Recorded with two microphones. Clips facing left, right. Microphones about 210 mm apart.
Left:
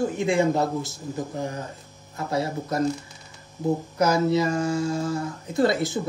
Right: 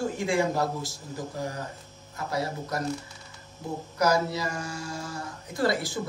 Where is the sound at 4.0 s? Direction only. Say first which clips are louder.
Left 4 dB; 25° left (ahead or behind).